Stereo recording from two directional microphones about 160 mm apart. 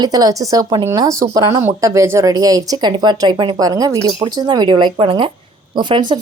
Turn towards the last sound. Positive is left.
turn(degrees=-30)  # may be behind; listen again after turning